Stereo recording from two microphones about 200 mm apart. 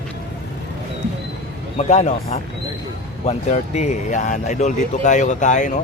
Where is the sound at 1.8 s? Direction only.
35° left (ahead or behind).